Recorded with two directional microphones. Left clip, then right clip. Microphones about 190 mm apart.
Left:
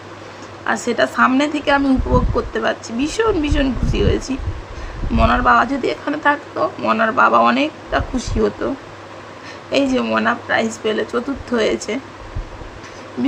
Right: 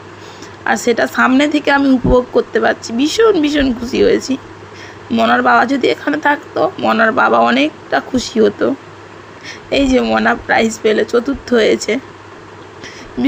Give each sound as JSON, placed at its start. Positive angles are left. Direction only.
{"t": 0.6, "sound": "speech", "side_deg": -20}